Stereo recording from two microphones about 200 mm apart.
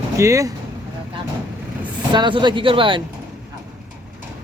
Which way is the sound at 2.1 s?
20° right (ahead or behind).